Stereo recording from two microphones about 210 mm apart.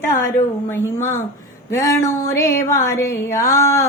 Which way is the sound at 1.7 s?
15° left (ahead or behind).